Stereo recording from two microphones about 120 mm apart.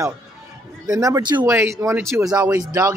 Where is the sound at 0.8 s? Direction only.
30° right (ahead or behind).